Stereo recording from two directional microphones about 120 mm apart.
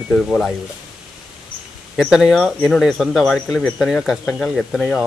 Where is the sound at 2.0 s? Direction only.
5° right (ahead or behind).